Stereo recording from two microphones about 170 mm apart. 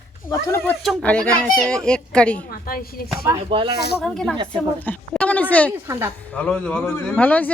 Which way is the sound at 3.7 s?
70° left (ahead or behind).